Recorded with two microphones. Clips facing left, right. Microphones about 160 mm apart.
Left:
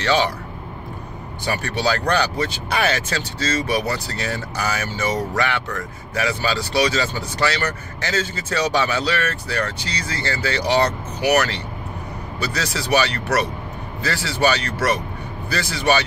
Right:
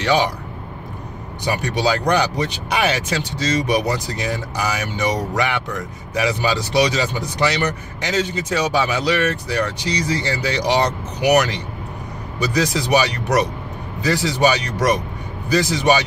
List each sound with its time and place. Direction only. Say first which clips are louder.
0.0 s speech: right 1 dB; 15° right (ahead or behind)
1.4 s speech: right 2 dB; 15° right (ahead or behind)